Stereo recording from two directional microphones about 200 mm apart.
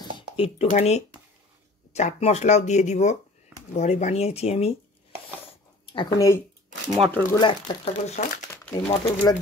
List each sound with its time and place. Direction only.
0.4 s speech: 30° left (ahead or behind)
5.9 s speech: 20° left (ahead or behind)
7.8 s speech: 35° left (ahead or behind)